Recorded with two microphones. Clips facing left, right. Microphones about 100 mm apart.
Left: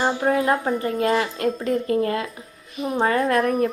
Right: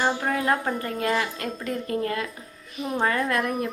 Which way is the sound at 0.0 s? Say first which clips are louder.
Left 4 dB; 25° left (ahead or behind).